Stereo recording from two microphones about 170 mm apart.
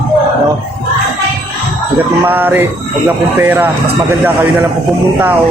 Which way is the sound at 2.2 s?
10° right (ahead or behind).